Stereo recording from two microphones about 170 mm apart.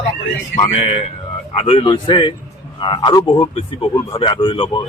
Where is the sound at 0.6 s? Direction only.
35° left (ahead or behind).